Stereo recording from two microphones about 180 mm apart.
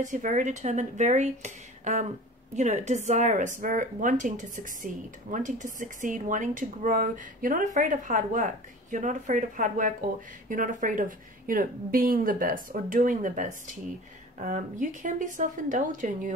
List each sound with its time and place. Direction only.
0.0 s a woman's voice: 45° right (ahead or behind)